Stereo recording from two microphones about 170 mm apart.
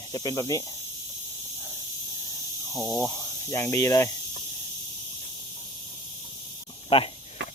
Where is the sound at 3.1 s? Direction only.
20° left (ahead or behind).